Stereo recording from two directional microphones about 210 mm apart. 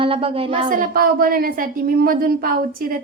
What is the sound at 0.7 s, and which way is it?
A woman's voice, 40° right (ahead or behind).